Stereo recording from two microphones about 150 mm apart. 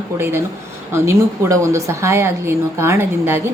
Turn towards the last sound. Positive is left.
turn(degrees=-15)  # may be behind; listen again after turning